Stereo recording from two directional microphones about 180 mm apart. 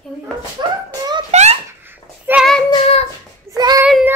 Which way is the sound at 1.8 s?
10° right (ahead or behind).